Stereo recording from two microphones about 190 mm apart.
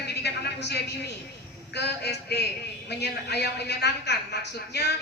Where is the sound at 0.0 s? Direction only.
60° left (ahead or behind).